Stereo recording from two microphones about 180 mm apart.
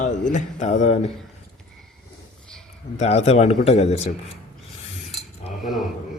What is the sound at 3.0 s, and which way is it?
Speech, 35° left (ahead or behind).